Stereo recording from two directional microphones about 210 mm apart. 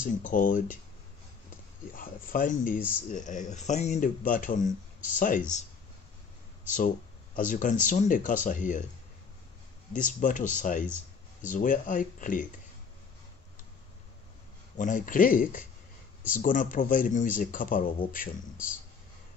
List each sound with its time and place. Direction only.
0.0 s speech: 40° left (ahead or behind)
2.0 s speech: 40° left (ahead or behind)
7.3 s speech: 40° left (ahead or behind)
9.9 s speech: 40° left (ahead or behind)
14.8 s speech: 40° left (ahead or behind)